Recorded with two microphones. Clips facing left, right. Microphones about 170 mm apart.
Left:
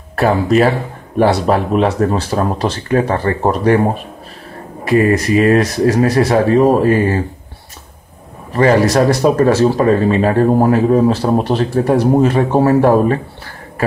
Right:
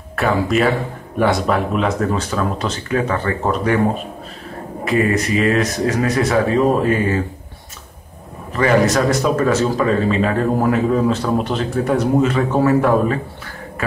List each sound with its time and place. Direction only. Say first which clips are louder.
0.1 s speech: left 5 dB; 35° left (ahead or behind)
4.8 s speech: left 5 dB; 35° left (ahead or behind)
8.5 s speech: left 4 dB; 35° left (ahead or behind)